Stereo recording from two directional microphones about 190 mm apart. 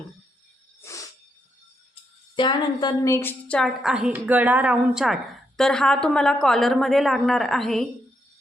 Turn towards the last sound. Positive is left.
turn(degrees=0)  # may be behind; listen again after turning